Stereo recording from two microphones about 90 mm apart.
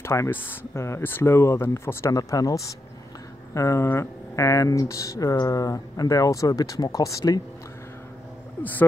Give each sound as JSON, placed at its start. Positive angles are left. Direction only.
{"t": 0.0, "sound": "speech", "side_deg": 30}